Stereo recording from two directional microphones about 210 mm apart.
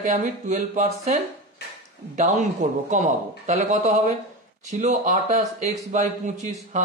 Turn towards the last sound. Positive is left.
turn(degrees=-35)  # may be behind; listen again after turning